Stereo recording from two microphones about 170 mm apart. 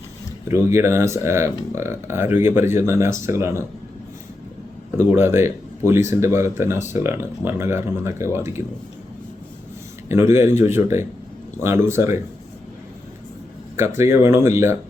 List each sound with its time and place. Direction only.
0.4 s speech: 15° right (ahead or behind)
4.9 s speech: 15° right (ahead or behind)
10.1 s speech: 15° right (ahead or behind)
13.7 s speech: 15° right (ahead or behind)